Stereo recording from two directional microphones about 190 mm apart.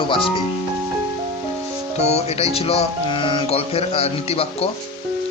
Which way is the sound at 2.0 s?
35° left (ahead or behind).